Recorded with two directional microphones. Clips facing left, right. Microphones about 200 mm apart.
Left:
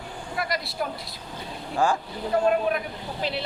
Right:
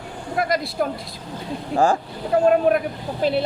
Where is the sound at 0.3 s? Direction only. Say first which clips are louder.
Right 7 dB; 50° right (ahead or behind).